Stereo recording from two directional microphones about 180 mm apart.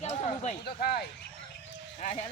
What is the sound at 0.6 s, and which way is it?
Speech, 60° left (ahead or behind).